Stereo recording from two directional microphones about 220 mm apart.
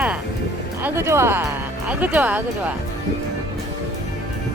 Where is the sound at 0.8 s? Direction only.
10° right (ahead or behind).